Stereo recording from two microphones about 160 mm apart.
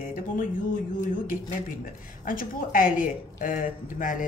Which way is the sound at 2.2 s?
60° left (ahead or behind).